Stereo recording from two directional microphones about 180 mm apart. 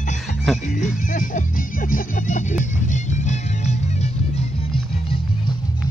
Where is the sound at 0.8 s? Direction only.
45° left (ahead or behind).